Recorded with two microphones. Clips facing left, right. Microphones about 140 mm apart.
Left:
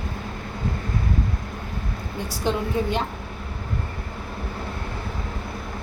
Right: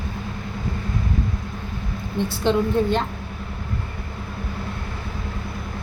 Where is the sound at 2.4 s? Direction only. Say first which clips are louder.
Right 4 dB; 15° left (ahead or behind).